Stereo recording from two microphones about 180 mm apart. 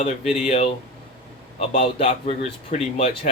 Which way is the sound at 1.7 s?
35° left (ahead or behind).